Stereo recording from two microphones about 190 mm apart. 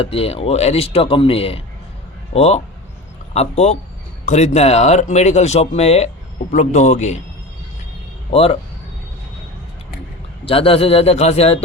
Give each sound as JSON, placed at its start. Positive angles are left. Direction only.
{"t": 0.0, "sound": "speech", "side_deg": 30}
{"t": 8.3, "sound": "speech", "side_deg": 30}
{"t": 10.4, "sound": "speech", "side_deg": 30}